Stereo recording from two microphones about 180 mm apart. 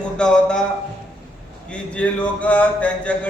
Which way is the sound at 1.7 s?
5° left (ahead or behind).